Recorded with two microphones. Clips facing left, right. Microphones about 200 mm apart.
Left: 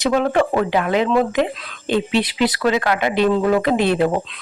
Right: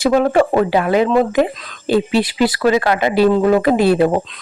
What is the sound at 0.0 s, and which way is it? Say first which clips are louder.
Speech: right 4 dB; 10° right (ahead or behind).